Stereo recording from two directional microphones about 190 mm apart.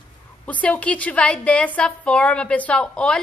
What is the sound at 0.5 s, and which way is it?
A woman's voice, 5° left (ahead or behind).